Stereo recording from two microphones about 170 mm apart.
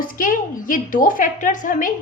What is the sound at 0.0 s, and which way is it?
A woman's voice, 50° left (ahead or behind).